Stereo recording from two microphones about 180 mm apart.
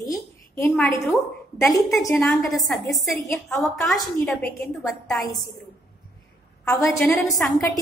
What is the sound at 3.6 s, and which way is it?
A woman's voice, centre (ahead or behind).